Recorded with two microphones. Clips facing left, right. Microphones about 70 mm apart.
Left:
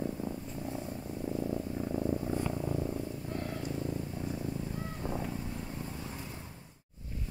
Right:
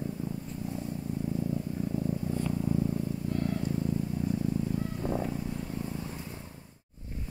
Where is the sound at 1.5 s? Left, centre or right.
Left.